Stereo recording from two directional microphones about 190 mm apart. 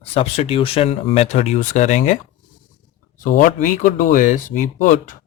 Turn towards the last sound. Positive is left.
turn(degrees=40)  # may be behind; listen again after turning